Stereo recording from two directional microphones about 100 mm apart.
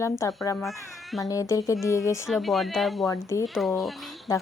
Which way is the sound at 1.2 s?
35° left (ahead or behind).